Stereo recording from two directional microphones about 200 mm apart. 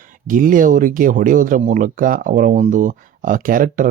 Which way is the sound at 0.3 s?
40° right (ahead or behind).